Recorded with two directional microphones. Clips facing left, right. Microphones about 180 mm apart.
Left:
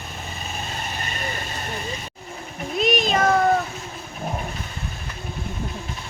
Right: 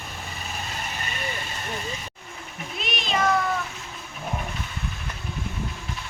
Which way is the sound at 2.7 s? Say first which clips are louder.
Left 7 dB; 40° left (ahead or behind).